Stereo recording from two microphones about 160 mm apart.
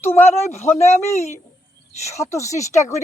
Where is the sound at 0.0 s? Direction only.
15° left (ahead or behind).